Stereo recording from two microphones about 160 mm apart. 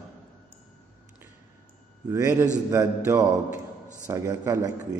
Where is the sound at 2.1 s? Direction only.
20° right (ahead or behind).